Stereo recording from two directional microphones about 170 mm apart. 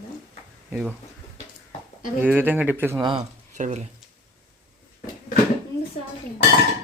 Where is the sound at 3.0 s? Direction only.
30° right (ahead or behind).